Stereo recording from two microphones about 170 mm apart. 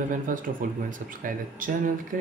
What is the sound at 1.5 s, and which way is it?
Speech, 55° right (ahead or behind).